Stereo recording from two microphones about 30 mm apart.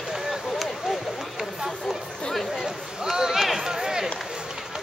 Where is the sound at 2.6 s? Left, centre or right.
Centre.